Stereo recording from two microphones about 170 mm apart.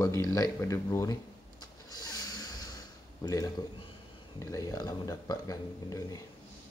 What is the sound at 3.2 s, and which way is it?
Speech, 20° left (ahead or behind).